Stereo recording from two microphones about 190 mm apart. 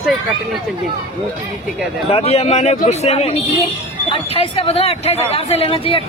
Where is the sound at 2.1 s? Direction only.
35° left (ahead or behind).